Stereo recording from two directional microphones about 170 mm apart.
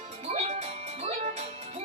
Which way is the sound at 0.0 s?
40° right (ahead or behind).